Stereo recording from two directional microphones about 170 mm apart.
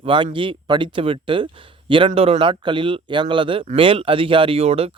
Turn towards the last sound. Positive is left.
turn(degrees=-35)  # may be behind; listen again after turning